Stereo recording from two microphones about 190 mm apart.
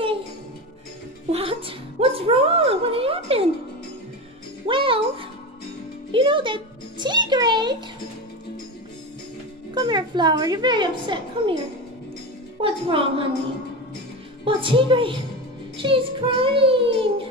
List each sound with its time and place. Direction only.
1.3 s a sound: 30° right (ahead or behind)
4.6 s music: 25° right (ahead or behind)
9.8 s a woman's voice: 25° right (ahead or behind)
12.6 s child singing: 30° right (ahead or behind)
14.4 s a woman's voice: 30° right (ahead or behind)
15.8 s child singing: 30° right (ahead or behind)